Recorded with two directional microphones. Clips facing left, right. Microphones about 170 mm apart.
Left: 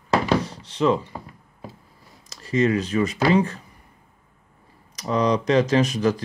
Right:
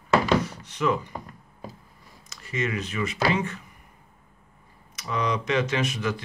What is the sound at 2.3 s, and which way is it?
Speech, 35° left (ahead or behind).